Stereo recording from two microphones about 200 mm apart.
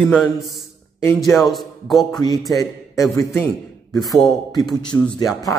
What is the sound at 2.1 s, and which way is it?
A man's voice, 20° left (ahead or behind).